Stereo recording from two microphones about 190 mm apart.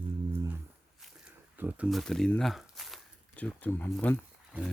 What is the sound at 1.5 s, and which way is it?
Speech, 10° right (ahead or behind).